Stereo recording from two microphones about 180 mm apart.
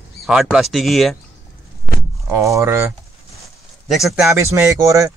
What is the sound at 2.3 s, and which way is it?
Speech, 15° right (ahead or behind).